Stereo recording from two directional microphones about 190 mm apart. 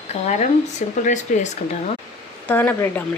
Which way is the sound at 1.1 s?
40° left (ahead or behind).